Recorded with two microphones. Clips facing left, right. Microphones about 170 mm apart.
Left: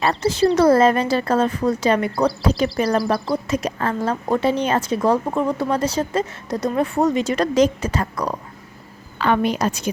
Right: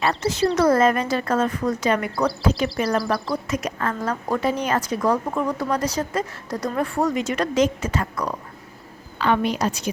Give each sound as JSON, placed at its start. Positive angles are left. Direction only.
{"t": 0.0, "sound": "a woman's voice", "side_deg": 30}
{"t": 9.1, "sound": "a woman's voice", "side_deg": 50}